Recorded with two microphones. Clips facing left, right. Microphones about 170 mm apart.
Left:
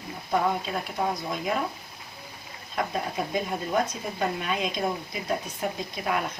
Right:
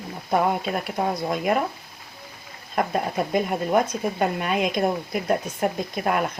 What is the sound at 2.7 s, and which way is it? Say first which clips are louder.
Speech: right 5 dB; 55° right (ahead or behind).